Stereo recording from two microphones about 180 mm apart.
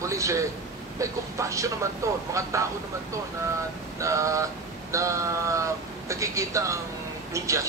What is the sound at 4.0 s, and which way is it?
Speech, 15° right (ahead or behind).